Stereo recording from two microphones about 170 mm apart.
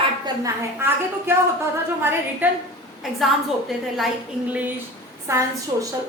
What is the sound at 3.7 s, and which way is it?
Speech, centre (ahead or behind).